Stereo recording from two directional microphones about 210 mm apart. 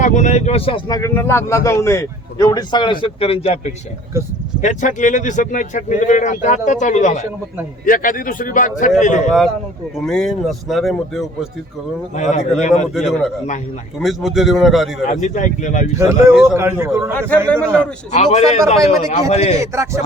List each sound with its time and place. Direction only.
0.0 s speech: 35° left (ahead or behind)
10.1 s speech: centre (ahead or behind)
12.1 s speech: 35° left (ahead or behind)
12.9 s speech: centre (ahead or behind)
15.2 s speech: 35° left (ahead or behind)
16.0 s a man's voice: 15° right (ahead or behind)
17.2 s a man's voice: 5° left (ahead or behind)
18.1 s speech: 35° left (ahead or behind)
19.7 s a man's voice: 15° right (ahead or behind)